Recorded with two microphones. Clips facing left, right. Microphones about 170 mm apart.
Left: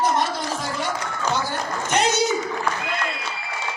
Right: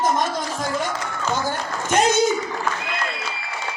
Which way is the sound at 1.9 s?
50° right (ahead or behind).